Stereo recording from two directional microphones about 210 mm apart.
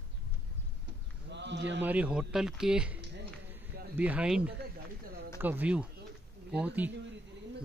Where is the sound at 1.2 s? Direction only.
55° right (ahead or behind).